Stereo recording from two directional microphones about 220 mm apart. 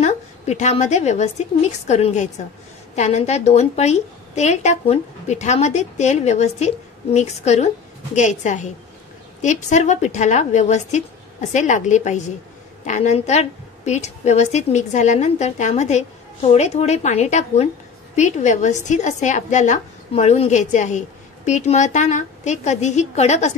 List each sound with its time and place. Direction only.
0.0 s a woman's voice: 30° left (ahead or behind)